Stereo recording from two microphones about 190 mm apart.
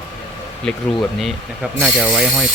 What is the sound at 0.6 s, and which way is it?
Wood, 5° left (ahead or behind).